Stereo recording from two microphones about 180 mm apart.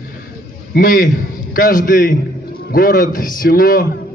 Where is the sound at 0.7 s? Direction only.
50° left (ahead or behind).